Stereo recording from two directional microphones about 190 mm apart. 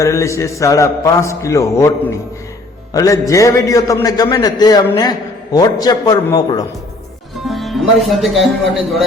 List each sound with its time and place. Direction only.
0.0 s a man's voice: 15° left (ahead or behind)
7.4 s speech: centre (ahead or behind)